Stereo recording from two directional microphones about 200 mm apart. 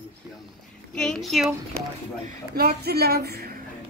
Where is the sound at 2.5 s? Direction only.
50° right (ahead or behind).